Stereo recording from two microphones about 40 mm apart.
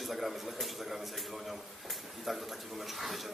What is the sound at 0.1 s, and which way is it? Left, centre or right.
Speech, centre.